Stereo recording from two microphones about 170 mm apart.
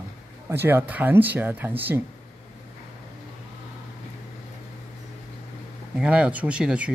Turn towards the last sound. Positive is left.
turn(degrees=-5)  # may be behind; listen again after turning